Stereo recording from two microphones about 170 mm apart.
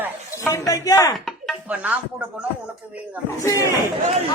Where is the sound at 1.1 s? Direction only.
Centre (ahead or behind).